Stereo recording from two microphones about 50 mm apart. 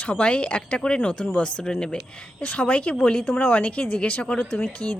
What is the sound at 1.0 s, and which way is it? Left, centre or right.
Speech, left.